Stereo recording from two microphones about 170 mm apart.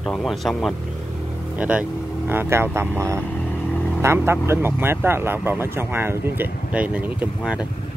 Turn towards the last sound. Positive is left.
turn(degrees=-5)  # may be behind; listen again after turning